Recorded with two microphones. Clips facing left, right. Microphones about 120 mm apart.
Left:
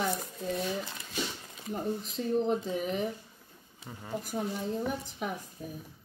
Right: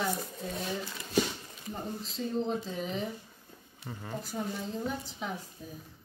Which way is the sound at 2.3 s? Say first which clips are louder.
Left 4 dB; 15° left (ahead or behind).